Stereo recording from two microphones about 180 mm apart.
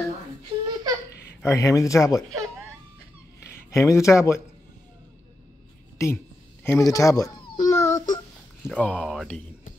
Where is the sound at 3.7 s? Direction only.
15° left (ahead or behind).